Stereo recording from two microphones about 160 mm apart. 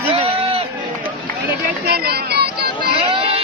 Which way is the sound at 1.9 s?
85° right.